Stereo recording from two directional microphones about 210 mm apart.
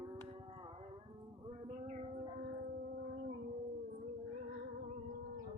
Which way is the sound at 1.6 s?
30° right (ahead or behind).